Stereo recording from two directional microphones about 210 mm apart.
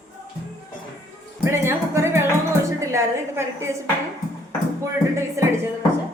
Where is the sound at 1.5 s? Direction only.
10° right (ahead or behind).